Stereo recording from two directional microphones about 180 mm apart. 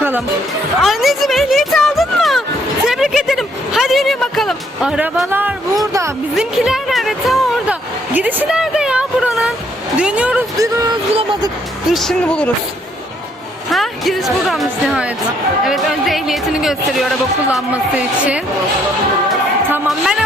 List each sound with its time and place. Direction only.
0.8 s speech: centre (ahead or behind)
2.8 s a sound: centre (ahead or behind)
5.3 s music: 10° right (ahead or behind)
6.3 s speech: centre (ahead or behind)
11.2 s speech: 25° right (ahead or behind)
11.9 s speech: centre (ahead or behind)
13.7 s music: centre (ahead or behind)
14.4 s speech: centre (ahead or behind)
19.9 s music: centre (ahead or behind)